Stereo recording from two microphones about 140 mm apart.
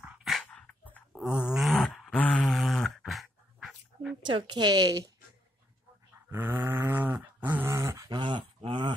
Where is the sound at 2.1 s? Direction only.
10° left (ahead or behind).